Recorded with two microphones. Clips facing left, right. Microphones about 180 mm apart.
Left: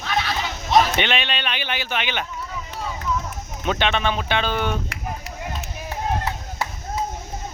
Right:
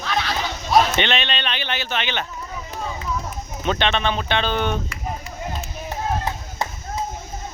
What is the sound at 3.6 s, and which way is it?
Speech, 5° left (ahead or behind).